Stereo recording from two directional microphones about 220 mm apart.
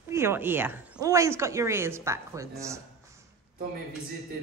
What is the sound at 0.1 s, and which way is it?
Speech, 10° right (ahead or behind).